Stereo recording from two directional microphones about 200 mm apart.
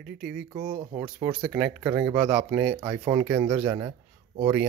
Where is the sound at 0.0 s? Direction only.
5° right (ahead or behind).